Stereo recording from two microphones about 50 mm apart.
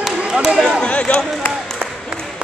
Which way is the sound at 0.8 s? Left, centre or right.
Left.